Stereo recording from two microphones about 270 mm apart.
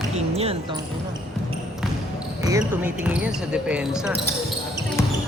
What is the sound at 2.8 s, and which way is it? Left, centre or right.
Speech, centre.